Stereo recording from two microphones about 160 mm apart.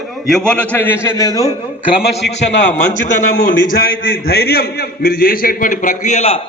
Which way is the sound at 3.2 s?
60° left (ahead or behind).